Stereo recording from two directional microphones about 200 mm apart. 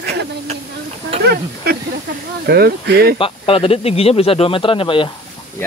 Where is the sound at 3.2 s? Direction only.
30° left (ahead or behind).